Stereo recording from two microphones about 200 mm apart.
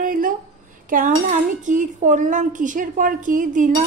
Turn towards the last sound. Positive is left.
turn(degrees=-40)  # may be behind; listen again after turning